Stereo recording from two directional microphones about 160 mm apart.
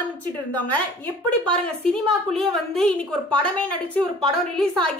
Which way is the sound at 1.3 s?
5° left (ahead or behind).